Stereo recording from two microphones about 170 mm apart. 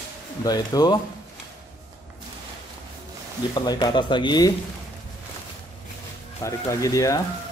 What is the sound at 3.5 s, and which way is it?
Speech, 25° left (ahead or behind).